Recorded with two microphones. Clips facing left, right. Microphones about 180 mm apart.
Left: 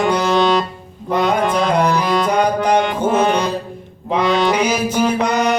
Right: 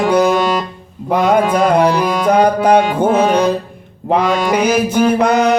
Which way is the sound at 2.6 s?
55° right (ahead or behind).